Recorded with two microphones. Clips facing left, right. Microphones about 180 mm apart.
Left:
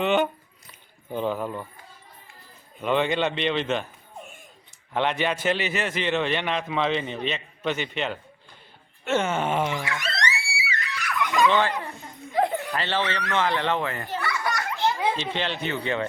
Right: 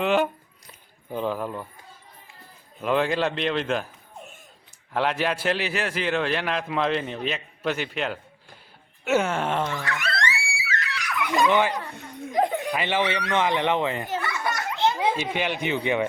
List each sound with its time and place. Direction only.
0.0 s a man's voice: centre (ahead or behind)
2.8 s a man's voice: centre (ahead or behind)
4.9 s a man's voice: centre (ahead or behind); by 10.0 s 15° left (ahead or behind)
10.8 s screaming: 5° right (ahead or behind)
11.4 s speech: 10° right (ahead or behind)
14.2 s children playing: 20° right (ahead or behind)
15.1 s speech: 10° right (ahead or behind)